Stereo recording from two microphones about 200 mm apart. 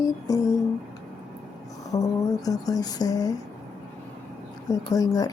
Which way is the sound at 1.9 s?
20° left (ahead or behind).